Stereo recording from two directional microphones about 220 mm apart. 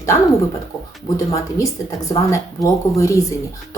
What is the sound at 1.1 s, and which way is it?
Speech, 15° left (ahead or behind).